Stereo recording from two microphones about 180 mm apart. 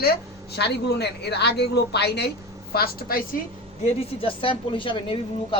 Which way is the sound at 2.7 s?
55° left (ahead or behind).